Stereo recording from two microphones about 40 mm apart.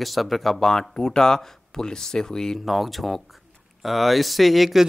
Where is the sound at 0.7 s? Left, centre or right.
Centre.